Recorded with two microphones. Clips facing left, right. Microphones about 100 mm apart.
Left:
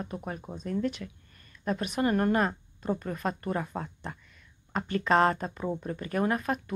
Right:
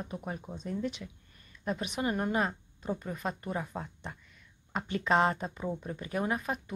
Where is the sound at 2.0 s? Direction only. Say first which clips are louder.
Left 6 dB; 65° left (ahead or behind).